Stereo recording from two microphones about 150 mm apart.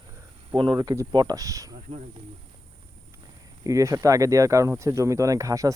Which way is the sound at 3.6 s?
20° right (ahead or behind).